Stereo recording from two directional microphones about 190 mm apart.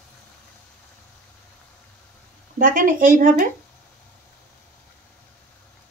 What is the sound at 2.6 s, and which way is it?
Speech, 45° right (ahead or behind).